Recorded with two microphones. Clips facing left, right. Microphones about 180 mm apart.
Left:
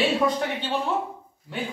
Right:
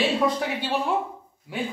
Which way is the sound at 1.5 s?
10° right (ahead or behind).